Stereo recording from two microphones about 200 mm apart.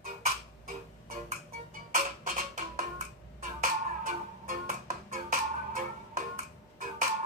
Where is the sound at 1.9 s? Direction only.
40° right (ahead or behind).